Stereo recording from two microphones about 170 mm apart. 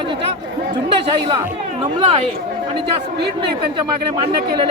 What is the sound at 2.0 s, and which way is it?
Speech, 35° right (ahead or behind).